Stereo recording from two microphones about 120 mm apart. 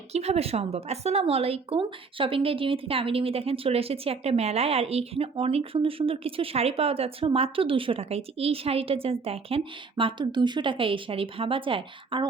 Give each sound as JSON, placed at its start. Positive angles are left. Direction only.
{"t": 0.1, "sound": "a woman's voice", "side_deg": -60}
{"t": 10.0, "sound": "a woman's voice", "side_deg": -45}